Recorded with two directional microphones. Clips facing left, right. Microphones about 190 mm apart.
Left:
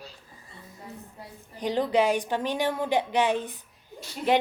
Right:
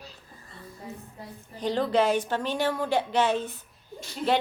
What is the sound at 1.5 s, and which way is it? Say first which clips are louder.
A woman's voice: even; 15° left (ahead or behind).